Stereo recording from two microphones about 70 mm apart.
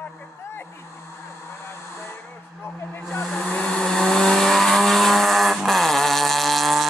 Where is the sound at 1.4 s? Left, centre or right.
Left.